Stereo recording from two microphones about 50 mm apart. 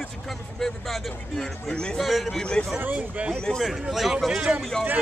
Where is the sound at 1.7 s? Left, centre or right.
Centre.